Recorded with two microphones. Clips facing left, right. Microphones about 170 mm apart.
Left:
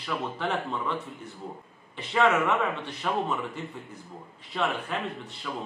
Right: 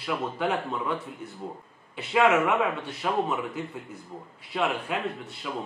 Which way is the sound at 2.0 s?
10° right (ahead or behind).